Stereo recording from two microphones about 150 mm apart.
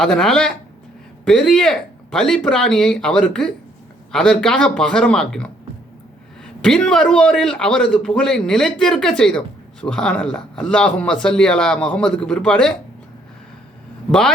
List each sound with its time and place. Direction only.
0.0 s a man's voice: 5° left (ahead or behind)
14.1 s a man's voice: 5° left (ahead or behind)